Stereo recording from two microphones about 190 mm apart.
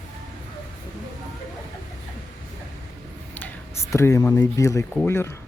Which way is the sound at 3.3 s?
10° left (ahead or behind).